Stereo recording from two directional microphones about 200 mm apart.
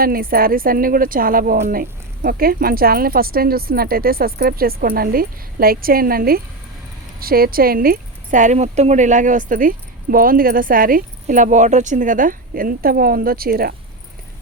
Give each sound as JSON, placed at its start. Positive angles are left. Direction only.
{"t": 0.0, "sound": "speech", "side_deg": -45}